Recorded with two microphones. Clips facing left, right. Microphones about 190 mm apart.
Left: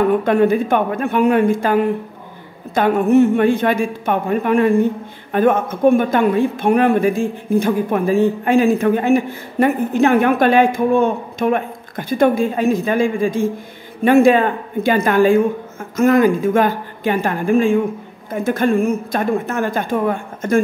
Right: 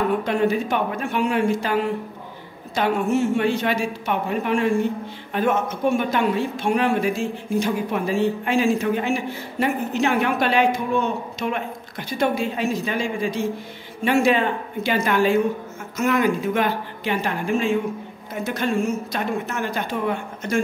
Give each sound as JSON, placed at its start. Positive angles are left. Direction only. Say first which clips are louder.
{"t": 0.2, "sound": "speech", "louder": "left 6 dB", "side_deg": 55}